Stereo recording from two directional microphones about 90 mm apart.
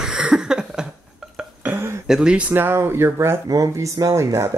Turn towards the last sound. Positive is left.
turn(degrees=-30)  # may be behind; listen again after turning